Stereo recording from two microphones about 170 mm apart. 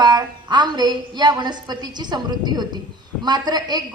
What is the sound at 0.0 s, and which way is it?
A woman's voice, 25° right (ahead or behind).